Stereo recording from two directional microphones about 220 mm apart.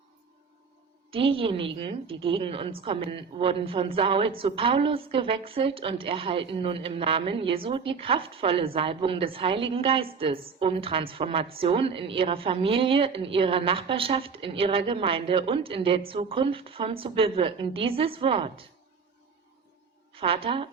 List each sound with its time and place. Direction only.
1.1 s a woman's voice: 25° right (ahead or behind)
20.1 s a woman's voice: 25° right (ahead or behind)